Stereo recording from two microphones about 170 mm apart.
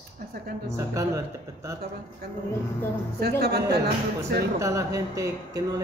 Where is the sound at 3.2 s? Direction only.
70° right (ahead or behind).